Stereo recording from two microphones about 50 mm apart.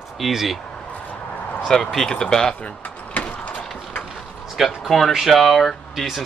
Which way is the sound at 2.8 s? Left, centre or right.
Left.